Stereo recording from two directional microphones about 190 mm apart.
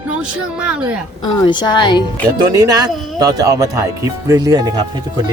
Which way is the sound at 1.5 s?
25° left (ahead or behind).